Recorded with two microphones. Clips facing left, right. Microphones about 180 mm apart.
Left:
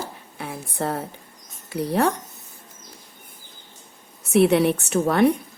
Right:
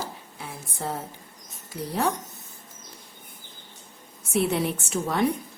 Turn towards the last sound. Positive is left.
turn(degrees=65)  # may be behind; listen again after turning